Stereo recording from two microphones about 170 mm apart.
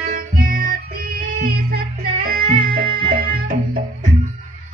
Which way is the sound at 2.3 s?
60° right (ahead or behind).